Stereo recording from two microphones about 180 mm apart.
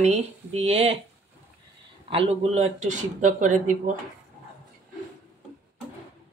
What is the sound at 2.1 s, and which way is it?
A man's voice, 35° right (ahead or behind).